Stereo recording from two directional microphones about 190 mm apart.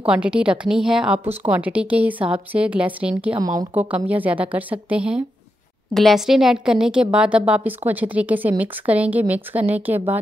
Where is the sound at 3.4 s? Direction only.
20° right (ahead or behind).